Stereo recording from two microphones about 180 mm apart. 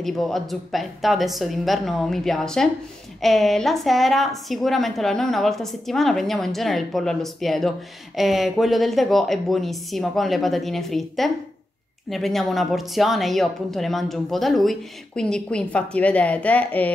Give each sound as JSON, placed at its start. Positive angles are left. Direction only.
{"t": 0.0, "sound": "speech", "side_deg": 0}